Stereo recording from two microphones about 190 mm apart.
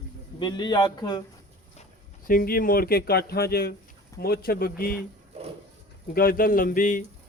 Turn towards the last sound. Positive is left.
turn(degrees=40)  # may be behind; listen again after turning